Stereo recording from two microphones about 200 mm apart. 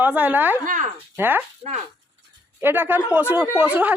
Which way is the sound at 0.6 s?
40° right (ahead or behind).